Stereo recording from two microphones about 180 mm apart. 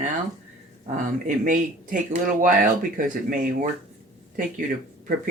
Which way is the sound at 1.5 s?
50° right (ahead or behind).